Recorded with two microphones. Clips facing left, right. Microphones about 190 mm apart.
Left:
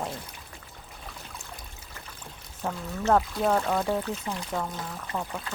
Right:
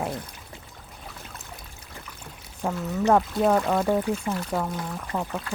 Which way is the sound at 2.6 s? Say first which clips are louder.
Right 6 dB; 10° right (ahead or behind).